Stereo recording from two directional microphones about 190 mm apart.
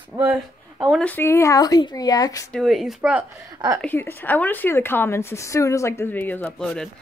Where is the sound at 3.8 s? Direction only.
10° left (ahead or behind).